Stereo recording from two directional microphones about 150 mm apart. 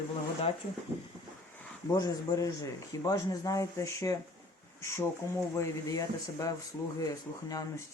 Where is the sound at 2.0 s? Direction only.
20° left (ahead or behind).